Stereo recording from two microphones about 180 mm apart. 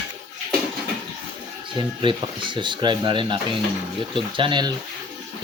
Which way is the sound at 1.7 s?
25° right (ahead or behind).